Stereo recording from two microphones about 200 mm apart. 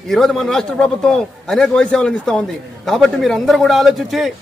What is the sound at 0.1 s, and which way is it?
A man's voice, centre (ahead or behind).